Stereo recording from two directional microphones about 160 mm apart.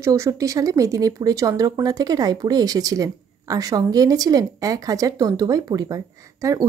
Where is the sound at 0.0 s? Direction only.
20° right (ahead or behind).